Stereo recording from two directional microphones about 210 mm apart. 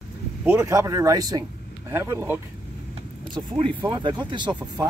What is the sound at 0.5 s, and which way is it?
Speech, 15° right (ahead or behind).